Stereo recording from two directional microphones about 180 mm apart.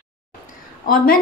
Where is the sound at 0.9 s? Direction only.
55° left (ahead or behind).